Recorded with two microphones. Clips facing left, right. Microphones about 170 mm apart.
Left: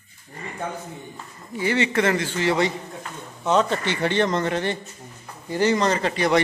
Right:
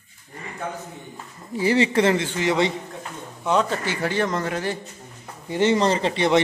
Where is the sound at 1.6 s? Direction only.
30° right (ahead or behind).